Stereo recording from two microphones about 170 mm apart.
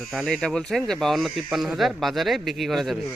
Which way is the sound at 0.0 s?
Centre (ahead or behind).